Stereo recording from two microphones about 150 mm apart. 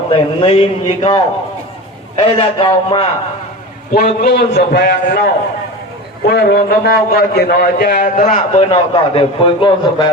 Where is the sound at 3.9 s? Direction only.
80° left.